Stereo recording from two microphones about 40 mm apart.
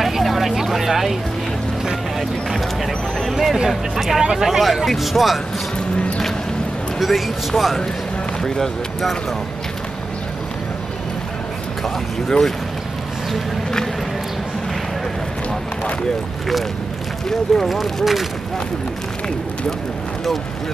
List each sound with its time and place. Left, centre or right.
0.0 s vehicle: centre
1.9 s music: centre
3.3 s speech: centre
7.0 s speech: centre
11.8 s speech: centre
17.5 s speech: centre